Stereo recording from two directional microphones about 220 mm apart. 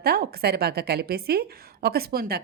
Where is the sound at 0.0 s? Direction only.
45° right (ahead or behind).